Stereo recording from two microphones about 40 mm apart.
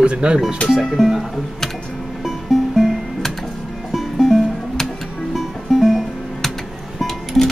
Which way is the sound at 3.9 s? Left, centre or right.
Centre.